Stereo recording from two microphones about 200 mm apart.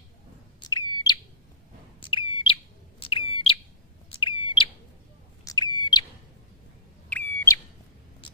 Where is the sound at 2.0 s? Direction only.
25° left (ahead or behind).